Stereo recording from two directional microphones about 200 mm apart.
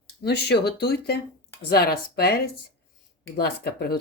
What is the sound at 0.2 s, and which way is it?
Speech, 55° left (ahead or behind).